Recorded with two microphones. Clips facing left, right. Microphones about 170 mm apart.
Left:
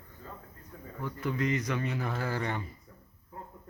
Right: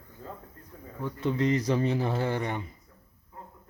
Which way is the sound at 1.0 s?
25° right (ahead or behind).